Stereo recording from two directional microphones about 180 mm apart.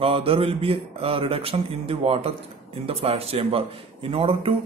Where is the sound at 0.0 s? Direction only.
30° right (ahead or behind).